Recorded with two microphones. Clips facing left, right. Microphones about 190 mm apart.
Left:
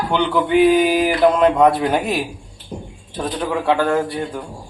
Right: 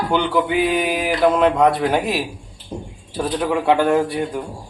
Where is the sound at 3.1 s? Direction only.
10° right (ahead or behind).